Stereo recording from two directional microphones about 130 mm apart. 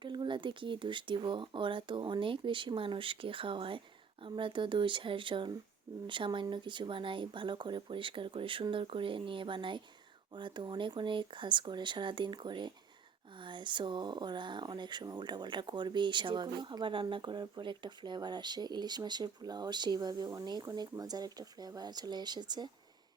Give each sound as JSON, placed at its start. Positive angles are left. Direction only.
{"t": 0.0, "sound": "speech", "side_deg": -35}